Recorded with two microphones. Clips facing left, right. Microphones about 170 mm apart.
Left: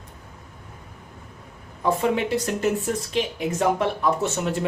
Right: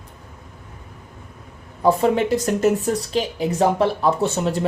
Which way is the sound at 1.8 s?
40° right (ahead or behind).